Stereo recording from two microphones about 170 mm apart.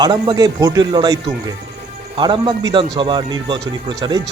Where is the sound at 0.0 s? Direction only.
25° right (ahead or behind).